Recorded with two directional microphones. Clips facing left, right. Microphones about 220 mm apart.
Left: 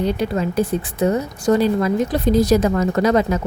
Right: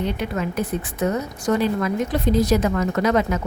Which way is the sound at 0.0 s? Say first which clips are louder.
Left 4 dB; 35° left (ahead or behind).